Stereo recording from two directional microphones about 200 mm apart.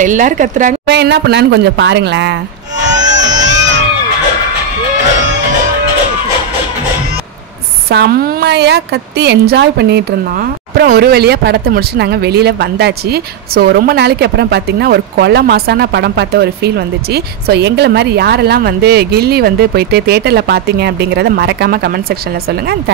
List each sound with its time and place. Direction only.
0.0 s a woman's voice: 40° right (ahead or behind)
0.8 s a woman's voice: 60° right (ahead or behind)
2.8 s music: 60° right (ahead or behind)
3.2 s crowd: 20° right (ahead or behind)
7.9 s a woman's voice: 55° right (ahead or behind)